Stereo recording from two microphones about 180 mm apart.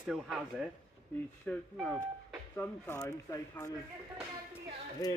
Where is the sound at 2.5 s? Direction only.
10° left (ahead or behind).